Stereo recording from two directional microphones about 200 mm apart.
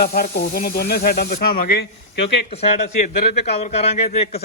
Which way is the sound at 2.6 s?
35° left (ahead or behind).